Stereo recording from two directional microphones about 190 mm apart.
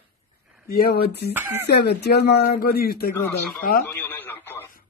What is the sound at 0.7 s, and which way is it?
Speech, 55° left (ahead or behind).